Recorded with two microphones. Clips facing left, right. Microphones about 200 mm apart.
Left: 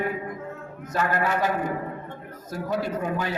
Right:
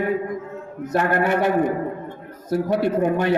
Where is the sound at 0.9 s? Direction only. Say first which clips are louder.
Right 5 dB; 60° right (ahead or behind).